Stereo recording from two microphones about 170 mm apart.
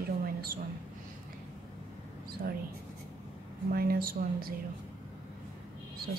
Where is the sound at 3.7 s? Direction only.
60° right (ahead or behind).